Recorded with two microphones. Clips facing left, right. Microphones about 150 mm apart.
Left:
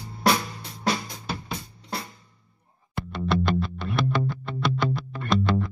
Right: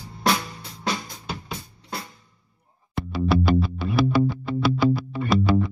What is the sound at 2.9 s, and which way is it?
Music, 5° right (ahead or behind).